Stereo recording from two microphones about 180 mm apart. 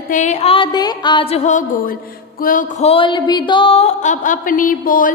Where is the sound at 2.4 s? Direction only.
50° left (ahead or behind).